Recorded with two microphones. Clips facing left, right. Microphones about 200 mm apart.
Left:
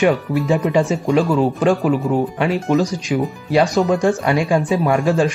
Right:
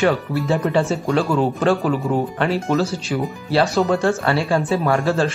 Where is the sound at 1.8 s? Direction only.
Centre (ahead or behind).